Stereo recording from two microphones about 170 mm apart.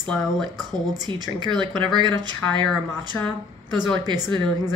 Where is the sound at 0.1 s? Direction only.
Centre (ahead or behind).